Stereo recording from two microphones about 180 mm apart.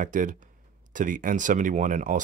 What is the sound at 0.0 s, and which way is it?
Speech, 45° right (ahead or behind).